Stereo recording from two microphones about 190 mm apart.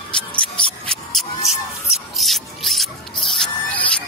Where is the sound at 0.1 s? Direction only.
5° left (ahead or behind).